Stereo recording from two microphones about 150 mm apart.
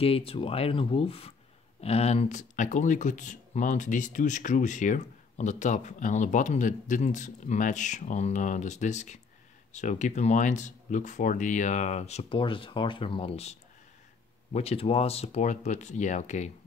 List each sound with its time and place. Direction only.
0.0 s speech: 40° left (ahead or behind)